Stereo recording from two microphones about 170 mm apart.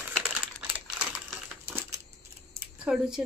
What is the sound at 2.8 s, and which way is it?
Speech, 5° right (ahead or behind).